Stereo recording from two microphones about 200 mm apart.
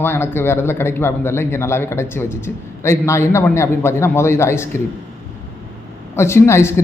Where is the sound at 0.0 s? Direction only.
10° left (ahead or behind).